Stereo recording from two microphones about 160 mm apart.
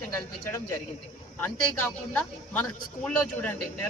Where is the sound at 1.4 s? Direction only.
10° left (ahead or behind).